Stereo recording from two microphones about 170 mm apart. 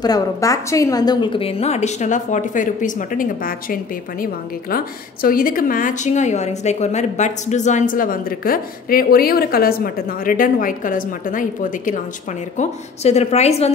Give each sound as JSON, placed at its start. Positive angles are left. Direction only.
{"t": 0.0, "sound": "a woman's voice", "side_deg": 20}